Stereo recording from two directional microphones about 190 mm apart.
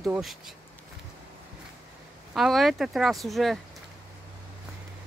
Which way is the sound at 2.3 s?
Centre (ahead or behind).